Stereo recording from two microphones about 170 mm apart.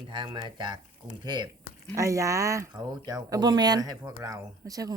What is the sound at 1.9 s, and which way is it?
Speech, 20° right (ahead or behind).